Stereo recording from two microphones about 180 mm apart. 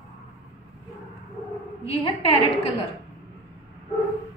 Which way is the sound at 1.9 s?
30° left (ahead or behind).